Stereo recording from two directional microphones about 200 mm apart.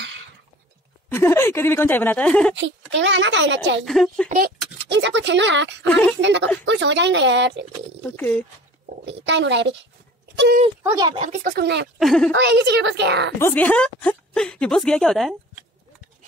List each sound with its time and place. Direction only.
1.0 s speech: 10° left (ahead or behind)
2.9 s speech: 65° right (ahead or behind)
3.8 s a woman's voice: centre (ahead or behind)
4.8 s speech: 60° right (ahead or behind)
8.2 s speech: 5° left (ahead or behind)
9.0 s speech: 65° right (ahead or behind)
10.8 s speech: 10° right (ahead or behind)
11.1 s speech: 30° right (ahead or behind)
11.4 s speech: 55° right (ahead or behind)
12.0 s a woman's voice: centre (ahead or behind)
12.3 s speech: 60° right (ahead or behind)
13.4 s a woman's voice: 10° left (ahead or behind)